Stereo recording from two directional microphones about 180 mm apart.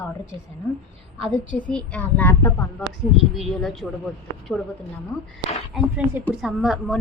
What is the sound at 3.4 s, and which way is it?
Speech, centre (ahead or behind).